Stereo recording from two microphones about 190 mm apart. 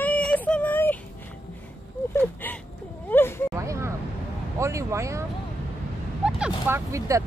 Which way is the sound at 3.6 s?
15° right (ahead or behind).